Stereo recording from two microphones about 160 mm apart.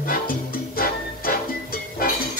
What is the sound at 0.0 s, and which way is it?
Music, 60° left (ahead or behind).